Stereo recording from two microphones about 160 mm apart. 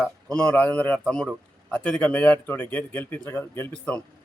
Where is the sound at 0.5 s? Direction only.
10° left (ahead or behind).